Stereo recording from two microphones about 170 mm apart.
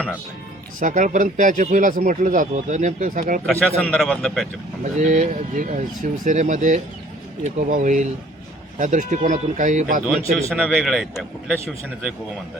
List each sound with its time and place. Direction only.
0.8 s speech: 50° right (ahead or behind)
3.4 s a man's voice: 5° left (ahead or behind)
4.8 s speech: 50° right (ahead or behind)
10.6 s a man's voice: centre (ahead or behind)